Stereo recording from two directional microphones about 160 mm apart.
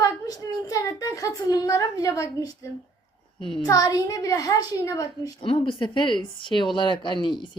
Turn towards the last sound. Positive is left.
turn(degrees=30)  # may be behind; listen again after turning